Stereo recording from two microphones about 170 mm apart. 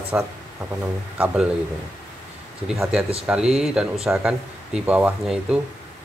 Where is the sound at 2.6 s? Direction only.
Centre (ahead or behind).